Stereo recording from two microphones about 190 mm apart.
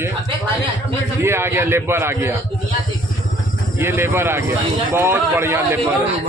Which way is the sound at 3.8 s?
10° right (ahead or behind).